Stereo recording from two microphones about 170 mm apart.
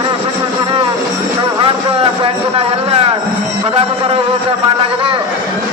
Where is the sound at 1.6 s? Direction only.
35° right (ahead or behind).